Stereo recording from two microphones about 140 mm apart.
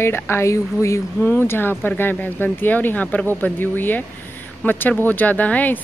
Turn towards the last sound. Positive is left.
turn(degrees=10)  # may be behind; listen again after turning